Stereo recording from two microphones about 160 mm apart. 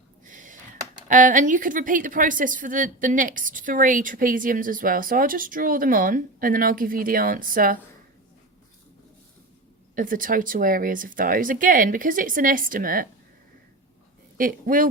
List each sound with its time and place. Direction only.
0.3 s a sound: 50° right (ahead or behind)
1.0 s a woman's voice: 55° right (ahead or behind)
9.9 s a woman's voice: 60° right (ahead or behind)
14.3 s a woman's voice: 60° right (ahead or behind)